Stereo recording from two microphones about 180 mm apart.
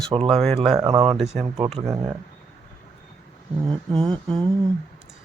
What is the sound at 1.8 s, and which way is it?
Speech, 20° right (ahead or behind).